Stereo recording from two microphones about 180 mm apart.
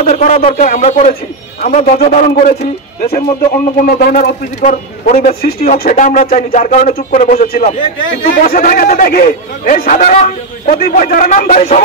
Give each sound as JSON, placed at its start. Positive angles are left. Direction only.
{"t": 0.0, "sound": "a man's voice", "side_deg": 45}
{"t": 3.8, "sound": "a man's voice", "side_deg": 55}